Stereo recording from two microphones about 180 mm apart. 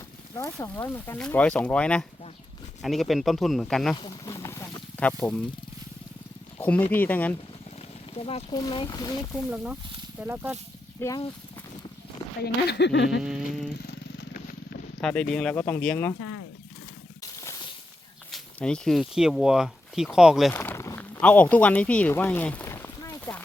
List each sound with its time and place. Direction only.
0.3 s speech: 15° left (ahead or behind)
3.9 s a sound: 20° left (ahead or behind)
6.6 s speech: 10° left (ahead or behind)
8.1 s speech: 35° left (ahead or behind)
9.3 s speech: 5° right (ahead or behind)
11.0 s speech: 10° left (ahead or behind)
12.6 s speech: 70° left (ahead or behind)
13.2 s speech: 5° right (ahead or behind)
15.0 s speech: 5° left (ahead or behind)
17.4 s a sound: 20° left (ahead or behind)
18.3 s speech: 5° left (ahead or behind)
20.5 s a sound: 15° left (ahead or behind)